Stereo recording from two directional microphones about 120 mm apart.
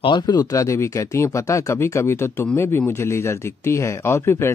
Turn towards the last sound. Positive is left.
turn(degrees=20)  # may be behind; listen again after turning